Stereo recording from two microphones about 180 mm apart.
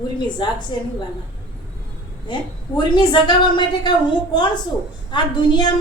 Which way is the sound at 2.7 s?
25° left (ahead or behind).